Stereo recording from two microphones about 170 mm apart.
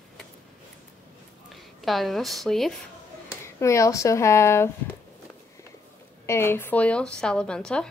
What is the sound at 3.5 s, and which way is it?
Speech, 15° left (ahead or behind).